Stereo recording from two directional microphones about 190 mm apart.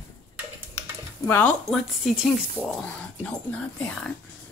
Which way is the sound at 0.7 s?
10° left (ahead or behind).